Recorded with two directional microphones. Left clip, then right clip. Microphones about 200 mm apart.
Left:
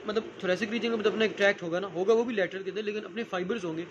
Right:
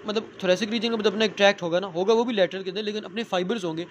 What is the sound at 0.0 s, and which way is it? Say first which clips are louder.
A man's voice: right 4 dB; 30° right (ahead or behind).